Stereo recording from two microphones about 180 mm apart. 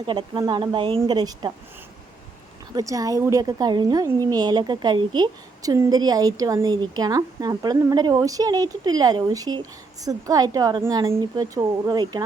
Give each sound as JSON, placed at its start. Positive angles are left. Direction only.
{"t": 0.0, "sound": "a woman's voice", "side_deg": -25}
{"t": 2.7, "sound": "a woman's voice", "side_deg": -20}